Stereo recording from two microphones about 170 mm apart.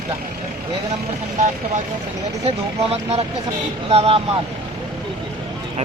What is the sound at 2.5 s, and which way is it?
Speech, 40° right (ahead or behind).